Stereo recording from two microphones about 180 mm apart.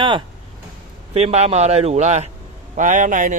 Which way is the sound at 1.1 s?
35° right (ahead or behind).